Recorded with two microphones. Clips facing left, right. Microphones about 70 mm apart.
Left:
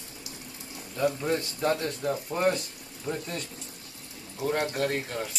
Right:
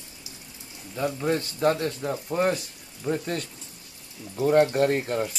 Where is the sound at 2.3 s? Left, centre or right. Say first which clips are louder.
Right 2 dB; centre.